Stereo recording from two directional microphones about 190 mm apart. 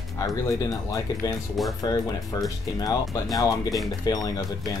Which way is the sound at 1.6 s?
Centre (ahead or behind).